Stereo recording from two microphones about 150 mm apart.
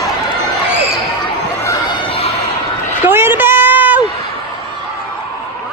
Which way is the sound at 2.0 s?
40° left (ahead or behind).